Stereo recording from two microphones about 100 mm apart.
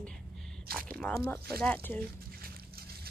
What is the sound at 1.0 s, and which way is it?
Speech, 10° left (ahead or behind).